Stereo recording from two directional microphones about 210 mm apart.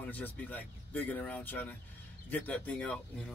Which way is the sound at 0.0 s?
5° left (ahead or behind).